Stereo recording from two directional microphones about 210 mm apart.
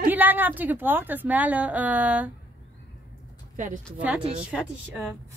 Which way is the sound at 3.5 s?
40° right (ahead or behind).